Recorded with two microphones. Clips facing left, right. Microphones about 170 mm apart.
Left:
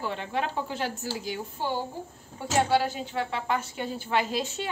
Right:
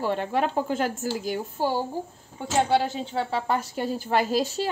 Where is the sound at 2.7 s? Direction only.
25° right (ahead or behind).